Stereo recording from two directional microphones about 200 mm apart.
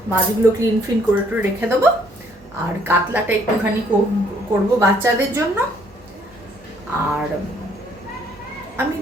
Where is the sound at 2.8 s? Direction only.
10° right (ahead or behind).